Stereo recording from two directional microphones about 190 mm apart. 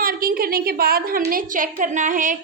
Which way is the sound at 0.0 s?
50° right (ahead or behind).